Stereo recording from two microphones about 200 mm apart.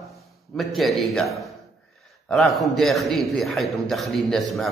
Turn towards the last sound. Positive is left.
turn(degrees=0)  # may be behind; listen again after turning